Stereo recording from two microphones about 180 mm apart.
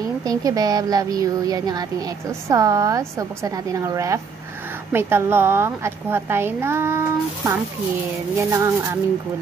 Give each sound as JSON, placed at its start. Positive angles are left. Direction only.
{"t": 0.2, "sound": "a woman's voice", "side_deg": -20}